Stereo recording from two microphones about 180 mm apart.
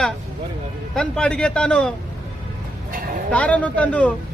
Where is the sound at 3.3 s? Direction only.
5° left (ahead or behind).